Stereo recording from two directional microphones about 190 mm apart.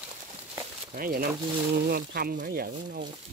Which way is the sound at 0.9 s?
50° right (ahead or behind).